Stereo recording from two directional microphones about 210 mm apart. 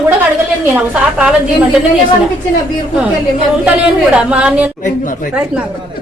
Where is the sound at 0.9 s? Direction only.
5° right (ahead or behind).